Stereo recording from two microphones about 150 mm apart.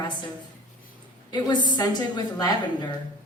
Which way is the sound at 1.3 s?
30° left (ahead or behind).